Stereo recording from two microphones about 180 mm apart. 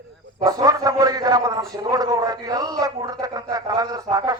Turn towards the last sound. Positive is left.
turn(degrees=-20)  # may be behind; listen again after turning